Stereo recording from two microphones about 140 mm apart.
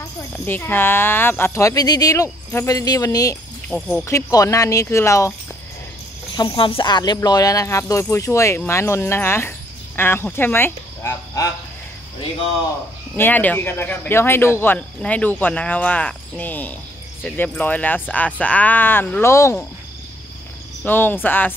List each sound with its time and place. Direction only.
0.5 s speech: 15° left (ahead or behind)
3.6 s speech: 5° left (ahead or behind)
4.0 s speech: 25° left (ahead or behind)
6.3 s speech: 35° left (ahead or behind)
13.1 s speech: 15° left (ahead or behind)
20.8 s speech: 15° left (ahead or behind)